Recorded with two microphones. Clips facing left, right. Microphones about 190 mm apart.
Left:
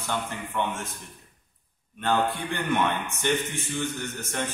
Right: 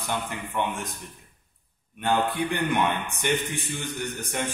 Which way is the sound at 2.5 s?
15° right (ahead or behind).